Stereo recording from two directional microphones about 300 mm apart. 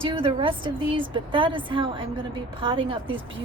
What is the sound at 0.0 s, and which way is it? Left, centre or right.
A woman's voice, centre.